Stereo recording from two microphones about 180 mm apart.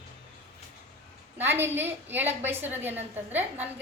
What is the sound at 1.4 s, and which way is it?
A woman's voice, 10° right (ahead or behind).